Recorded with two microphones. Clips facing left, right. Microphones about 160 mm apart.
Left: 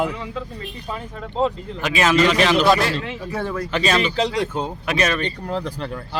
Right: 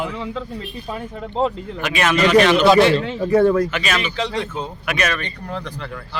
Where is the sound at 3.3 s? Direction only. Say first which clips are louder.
Right 12 dB; 55° right (ahead or behind).